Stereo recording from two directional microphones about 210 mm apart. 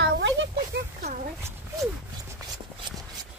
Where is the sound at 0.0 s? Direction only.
55° right (ahead or behind).